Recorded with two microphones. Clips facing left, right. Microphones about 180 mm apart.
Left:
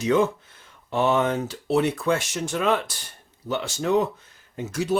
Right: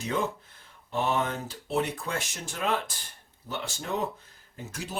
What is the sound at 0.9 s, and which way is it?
Speech, 85° left.